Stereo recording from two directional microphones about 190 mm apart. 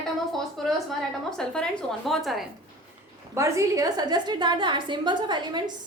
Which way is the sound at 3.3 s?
15° right (ahead or behind).